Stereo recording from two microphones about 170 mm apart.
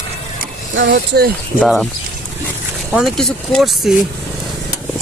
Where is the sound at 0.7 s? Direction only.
75° right (ahead or behind).